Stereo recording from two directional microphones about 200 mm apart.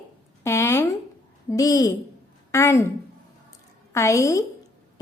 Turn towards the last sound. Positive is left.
turn(degrees=15)  # may be behind; listen again after turning